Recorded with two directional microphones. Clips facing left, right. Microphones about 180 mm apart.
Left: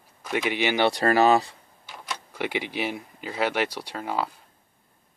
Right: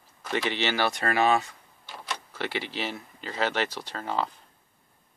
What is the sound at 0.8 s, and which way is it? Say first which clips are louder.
Speech: left 6 dB; 35° left (ahead or behind).